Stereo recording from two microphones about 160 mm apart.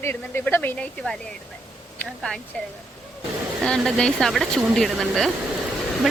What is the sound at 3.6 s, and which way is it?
Speech, 5° left (ahead or behind).